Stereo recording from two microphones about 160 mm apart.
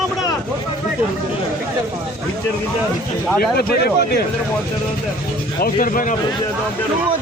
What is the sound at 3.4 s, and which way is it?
Speech, 85° left.